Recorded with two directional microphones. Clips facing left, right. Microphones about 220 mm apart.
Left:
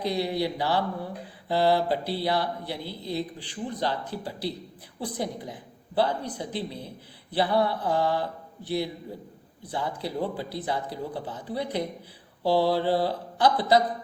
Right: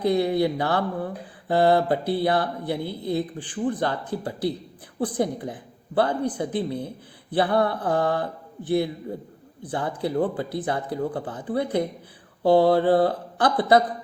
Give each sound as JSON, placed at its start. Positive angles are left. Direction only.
{"t": 0.0, "sound": "a woman's voice", "side_deg": -55}